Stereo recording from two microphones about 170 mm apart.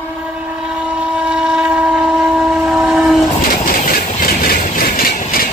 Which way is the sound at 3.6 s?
55° left (ahead or behind).